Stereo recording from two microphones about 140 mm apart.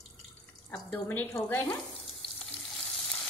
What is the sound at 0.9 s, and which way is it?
Speech, 15° left (ahead or behind).